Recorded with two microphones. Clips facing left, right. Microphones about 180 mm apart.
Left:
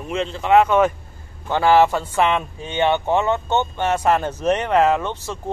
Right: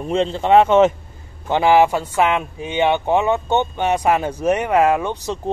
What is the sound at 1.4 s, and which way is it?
Speech, 15° right (ahead or behind).